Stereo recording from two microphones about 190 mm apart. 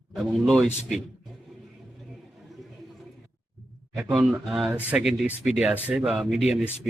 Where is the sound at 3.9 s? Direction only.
5° right (ahead or behind).